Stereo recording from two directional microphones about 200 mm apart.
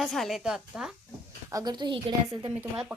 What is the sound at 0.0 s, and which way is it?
Speech, centre (ahead or behind).